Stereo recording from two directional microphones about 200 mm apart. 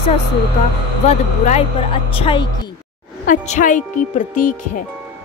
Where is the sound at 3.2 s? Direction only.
40° left (ahead or behind).